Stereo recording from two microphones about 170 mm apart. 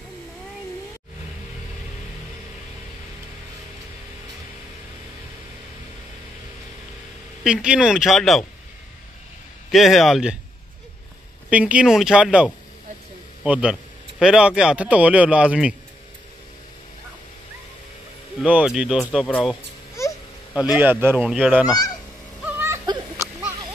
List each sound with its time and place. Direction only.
7.4 s a man's voice: 5° right (ahead or behind)
9.7 s a man's voice: centre (ahead or behind)
11.5 s a man's voice: 5° right (ahead or behind)
18.4 s a man's voice: 5° right (ahead or behind)
20.7 s speech: 10° right (ahead or behind)
21.6 s honk: 20° left (ahead or behind)
22.4 s whimper: 10° right (ahead or behind)